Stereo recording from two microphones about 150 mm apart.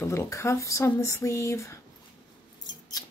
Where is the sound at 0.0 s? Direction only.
20° left (ahead or behind).